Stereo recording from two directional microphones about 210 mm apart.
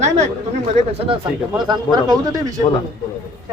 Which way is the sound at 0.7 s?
30° right (ahead or behind).